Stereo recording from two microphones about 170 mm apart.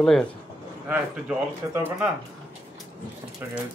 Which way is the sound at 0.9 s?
10° right (ahead or behind).